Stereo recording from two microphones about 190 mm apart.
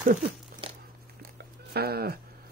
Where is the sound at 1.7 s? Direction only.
55° right (ahead or behind).